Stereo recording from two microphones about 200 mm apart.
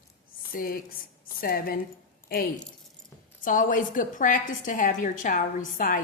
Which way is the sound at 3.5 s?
40° left (ahead or behind).